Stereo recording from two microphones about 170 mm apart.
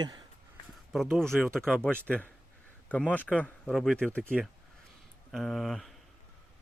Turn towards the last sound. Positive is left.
turn(degrees=0)  # may be behind; listen again after turning